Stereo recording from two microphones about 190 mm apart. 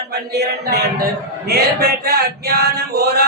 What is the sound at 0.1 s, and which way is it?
Male singing, 60° right (ahead or behind).